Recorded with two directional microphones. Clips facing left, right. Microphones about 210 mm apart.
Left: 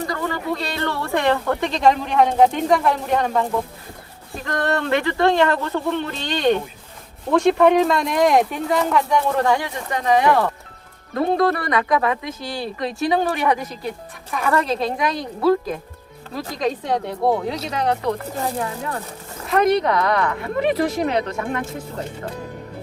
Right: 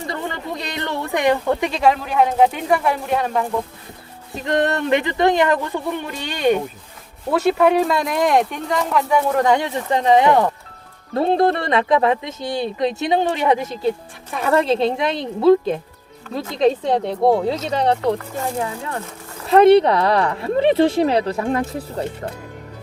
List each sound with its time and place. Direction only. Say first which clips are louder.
0.1 s speech: left 2 dB; 25° right (ahead or behind); by 3.4 s 5° right (ahead or behind)
4.4 s speech: right 3 dB; 20° right (ahead or behind); by 9.2 s 5° right (ahead or behind)
9.4 s speech: right 3 dB; 20° right (ahead or behind)
19.5 s speech: right 7 dB; 30° right (ahead or behind)